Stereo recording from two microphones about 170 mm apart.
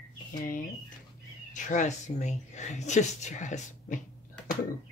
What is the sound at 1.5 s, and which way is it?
Speech, 45° left (ahead or behind).